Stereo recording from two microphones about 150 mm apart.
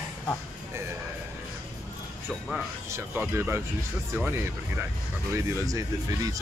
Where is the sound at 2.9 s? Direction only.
15° right (ahead or behind).